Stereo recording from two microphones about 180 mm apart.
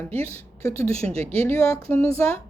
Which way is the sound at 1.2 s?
35° right (ahead or behind).